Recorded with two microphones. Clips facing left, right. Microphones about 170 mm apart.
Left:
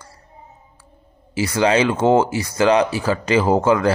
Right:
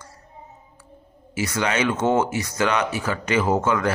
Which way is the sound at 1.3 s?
30° left (ahead or behind).